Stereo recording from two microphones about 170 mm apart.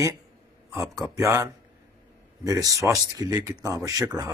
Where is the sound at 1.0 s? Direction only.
15° right (ahead or behind).